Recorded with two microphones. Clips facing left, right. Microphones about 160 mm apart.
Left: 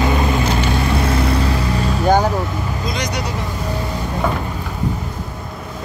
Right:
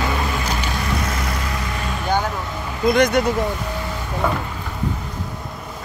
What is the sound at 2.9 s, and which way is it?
Speech, 55° right (ahead or behind).